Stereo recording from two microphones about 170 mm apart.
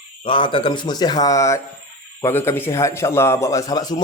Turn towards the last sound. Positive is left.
turn(degrees=25)  # may be behind; listen again after turning